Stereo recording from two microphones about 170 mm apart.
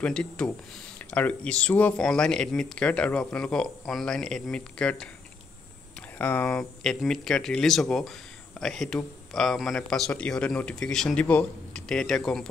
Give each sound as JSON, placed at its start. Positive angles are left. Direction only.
{"t": 0.0, "sound": "speech", "side_deg": 5}